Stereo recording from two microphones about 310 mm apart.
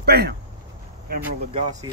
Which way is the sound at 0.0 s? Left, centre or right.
Right.